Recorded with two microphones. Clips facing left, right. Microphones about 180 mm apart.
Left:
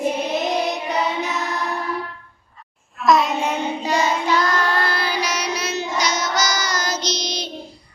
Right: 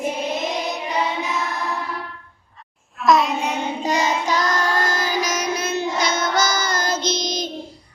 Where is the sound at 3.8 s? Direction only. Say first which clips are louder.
Right 1 dB; 45° right (ahead or behind).